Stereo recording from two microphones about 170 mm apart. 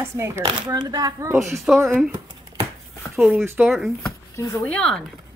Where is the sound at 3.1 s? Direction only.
Centre (ahead or behind).